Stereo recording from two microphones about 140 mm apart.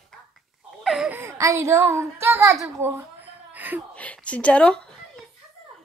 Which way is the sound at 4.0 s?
10° left (ahead or behind).